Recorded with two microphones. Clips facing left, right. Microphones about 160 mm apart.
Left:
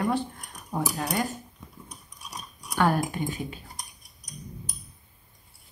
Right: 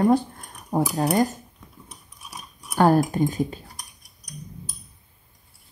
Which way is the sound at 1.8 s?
5° right (ahead or behind).